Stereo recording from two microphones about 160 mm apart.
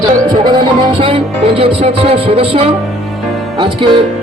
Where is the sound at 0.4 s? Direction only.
30° right (ahead or behind).